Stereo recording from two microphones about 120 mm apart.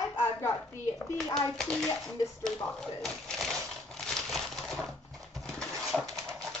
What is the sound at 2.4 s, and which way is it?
Crumpling, 5° left (ahead or behind).